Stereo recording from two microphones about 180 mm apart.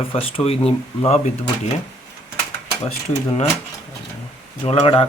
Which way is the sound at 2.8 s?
30° left (ahead or behind).